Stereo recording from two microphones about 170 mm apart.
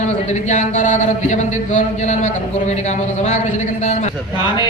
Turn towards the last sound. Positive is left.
turn(degrees=45)  # may be behind; listen again after turning